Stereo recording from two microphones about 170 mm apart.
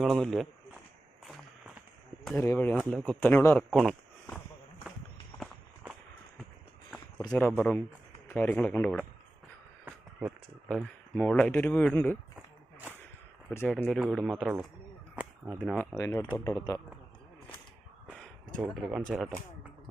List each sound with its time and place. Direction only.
0.0 s speech: centre (ahead or behind)
2.3 s speech: 15° left (ahead or behind)
3.6 s speech: centre (ahead or behind)
7.3 s speech: 10° left (ahead or behind)
9.8 s speech: 5° right (ahead or behind)
13.7 s speech: 5° left (ahead or behind)
16.0 s speech: 15° left (ahead or behind)
18.1 s a sound: 5° left (ahead or behind)
18.6 s speech: 5° right (ahead or behind)